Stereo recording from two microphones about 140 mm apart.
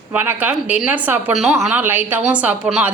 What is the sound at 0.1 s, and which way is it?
A woman's voice, 15° right (ahead or behind).